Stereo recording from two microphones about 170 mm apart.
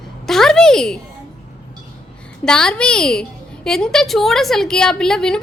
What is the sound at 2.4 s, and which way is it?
A woman's voice, 5° left (ahead or behind).